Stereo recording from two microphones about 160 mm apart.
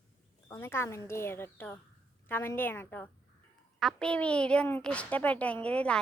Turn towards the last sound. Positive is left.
turn(degrees=5)  # may be behind; listen again after turning